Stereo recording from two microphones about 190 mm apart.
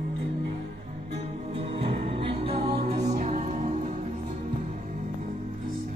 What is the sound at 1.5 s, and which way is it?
Music, 30° right (ahead or behind).